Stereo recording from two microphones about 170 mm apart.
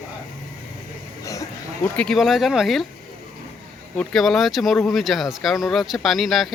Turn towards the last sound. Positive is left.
turn(degrees=0)  # may be behind; listen again after turning